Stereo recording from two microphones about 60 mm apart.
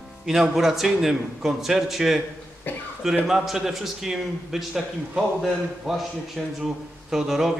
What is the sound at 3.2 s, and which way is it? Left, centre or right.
A man's voice, centre.